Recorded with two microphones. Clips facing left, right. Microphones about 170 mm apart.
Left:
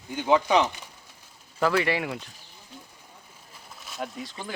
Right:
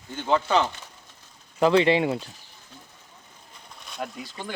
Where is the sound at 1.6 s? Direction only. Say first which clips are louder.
Right 5 dB; 20° right (ahead or behind).